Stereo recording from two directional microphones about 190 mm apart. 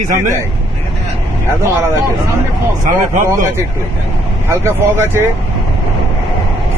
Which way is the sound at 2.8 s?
45° right (ahead or behind).